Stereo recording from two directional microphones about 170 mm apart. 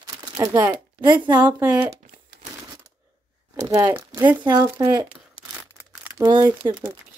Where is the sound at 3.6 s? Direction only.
15° right (ahead or behind).